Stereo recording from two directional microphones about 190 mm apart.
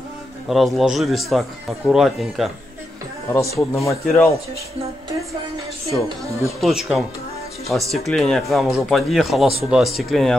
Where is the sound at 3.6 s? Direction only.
15° left (ahead or behind).